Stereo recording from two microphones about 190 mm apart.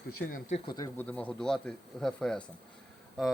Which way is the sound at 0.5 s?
25° left (ahead or behind).